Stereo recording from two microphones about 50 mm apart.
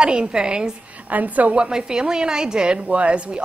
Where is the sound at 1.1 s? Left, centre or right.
Right.